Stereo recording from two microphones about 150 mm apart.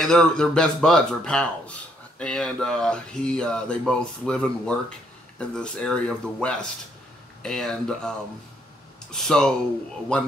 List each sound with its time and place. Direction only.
0.0 s speech: 5° left (ahead or behind)